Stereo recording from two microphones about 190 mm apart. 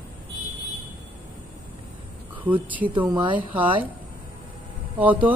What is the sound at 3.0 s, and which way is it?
Speech, 20° right (ahead or behind).